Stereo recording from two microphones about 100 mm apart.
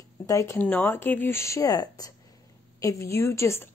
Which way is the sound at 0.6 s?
15° left (ahead or behind).